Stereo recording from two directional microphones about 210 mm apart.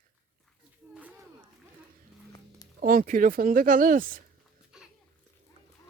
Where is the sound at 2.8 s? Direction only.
40° right (ahead or behind).